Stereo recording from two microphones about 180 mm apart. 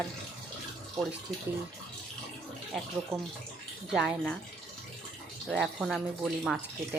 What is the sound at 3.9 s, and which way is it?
Speech, 5° right (ahead or behind).